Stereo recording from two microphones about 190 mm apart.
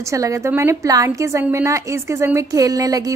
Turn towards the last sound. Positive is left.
turn(degrees=-20)  # may be behind; listen again after turning